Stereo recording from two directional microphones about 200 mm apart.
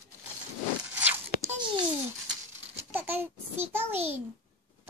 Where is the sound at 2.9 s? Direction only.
10° right (ahead or behind).